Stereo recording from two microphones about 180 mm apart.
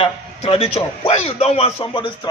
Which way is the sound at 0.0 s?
35° left (ahead or behind).